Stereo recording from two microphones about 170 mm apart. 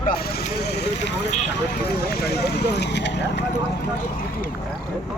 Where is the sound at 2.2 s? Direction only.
75° left (ahead or behind).